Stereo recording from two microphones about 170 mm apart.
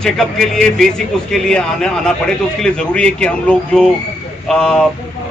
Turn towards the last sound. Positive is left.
turn(degrees=5)  # may be behind; listen again after turning